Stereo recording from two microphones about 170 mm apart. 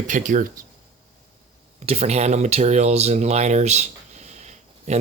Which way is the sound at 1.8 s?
40° right (ahead or behind).